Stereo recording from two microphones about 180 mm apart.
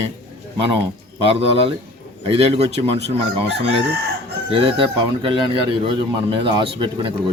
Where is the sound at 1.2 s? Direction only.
30° right (ahead or behind).